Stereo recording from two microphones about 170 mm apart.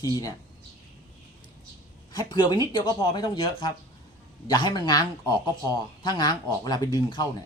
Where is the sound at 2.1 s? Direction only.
25° left (ahead or behind).